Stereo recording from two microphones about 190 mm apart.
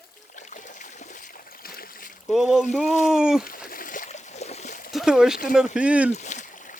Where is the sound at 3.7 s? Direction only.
45° left (ahead or behind).